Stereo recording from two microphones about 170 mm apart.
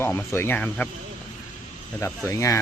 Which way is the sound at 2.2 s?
15° left (ahead or behind).